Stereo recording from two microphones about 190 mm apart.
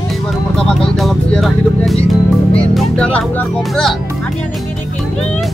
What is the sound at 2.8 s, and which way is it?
Speech, 5° left (ahead or behind).